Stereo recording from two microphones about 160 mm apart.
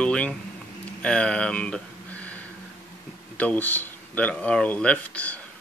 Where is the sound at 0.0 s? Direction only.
5° left (ahead or behind).